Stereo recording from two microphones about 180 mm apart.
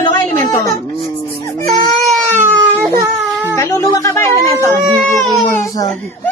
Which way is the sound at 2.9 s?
20° right (ahead or behind).